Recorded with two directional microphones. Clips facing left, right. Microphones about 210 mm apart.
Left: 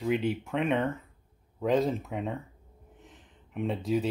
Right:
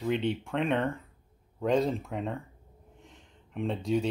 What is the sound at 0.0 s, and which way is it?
Speech, 5° left (ahead or behind).